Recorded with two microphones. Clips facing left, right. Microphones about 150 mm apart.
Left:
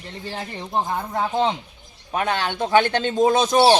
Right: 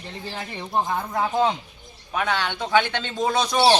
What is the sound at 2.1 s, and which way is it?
Speech, 45° left (ahead or behind).